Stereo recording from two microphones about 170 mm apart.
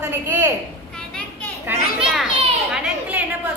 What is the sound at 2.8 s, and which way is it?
Speech, 10° right (ahead or behind).